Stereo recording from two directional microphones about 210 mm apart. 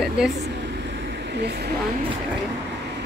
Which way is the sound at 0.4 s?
55° right (ahead or behind).